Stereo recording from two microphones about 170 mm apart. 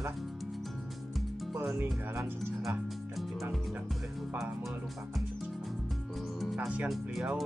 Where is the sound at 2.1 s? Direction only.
5° right (ahead or behind).